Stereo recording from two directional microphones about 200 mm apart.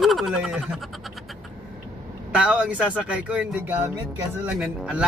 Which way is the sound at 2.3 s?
5° right (ahead or behind).